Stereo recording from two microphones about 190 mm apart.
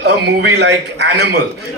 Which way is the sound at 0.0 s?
65° right (ahead or behind).